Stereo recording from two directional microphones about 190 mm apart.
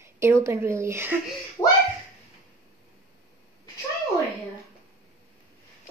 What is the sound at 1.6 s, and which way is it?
Speech, 20° left (ahead or behind).